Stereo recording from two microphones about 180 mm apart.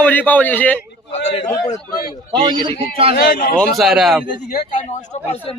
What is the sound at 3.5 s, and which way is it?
Speech, centre (ahead or behind).